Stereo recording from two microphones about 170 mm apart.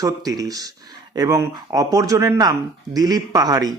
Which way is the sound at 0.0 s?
20° right (ahead or behind).